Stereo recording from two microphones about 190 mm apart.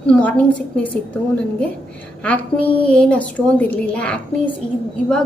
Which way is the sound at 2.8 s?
5° left (ahead or behind).